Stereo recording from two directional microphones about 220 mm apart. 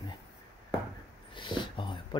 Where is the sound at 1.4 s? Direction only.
20° left (ahead or behind).